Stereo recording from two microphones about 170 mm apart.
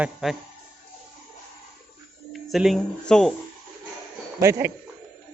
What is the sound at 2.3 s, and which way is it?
Speech, centre (ahead or behind).